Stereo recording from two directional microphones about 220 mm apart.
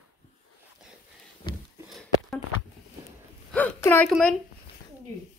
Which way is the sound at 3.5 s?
10° left (ahead or behind).